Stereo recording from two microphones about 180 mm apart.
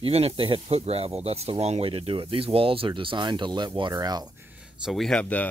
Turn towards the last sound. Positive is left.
turn(degrees=10)  # may be behind; listen again after turning